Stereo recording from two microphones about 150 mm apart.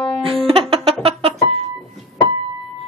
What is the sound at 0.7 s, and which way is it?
Music, 40° right (ahead or behind).